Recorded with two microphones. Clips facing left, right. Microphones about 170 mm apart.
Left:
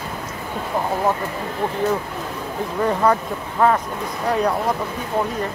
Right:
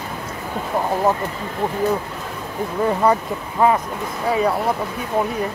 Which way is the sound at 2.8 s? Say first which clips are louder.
Right 1 dB; 10° right (ahead or behind).